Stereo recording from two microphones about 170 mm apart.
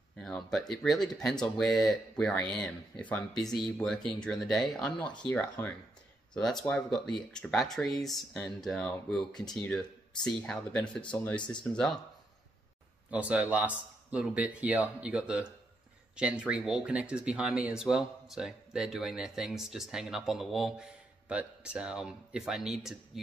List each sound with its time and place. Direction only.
0.2 s speech: 5° left (ahead or behind)
13.1 s speech: 10° right (ahead or behind)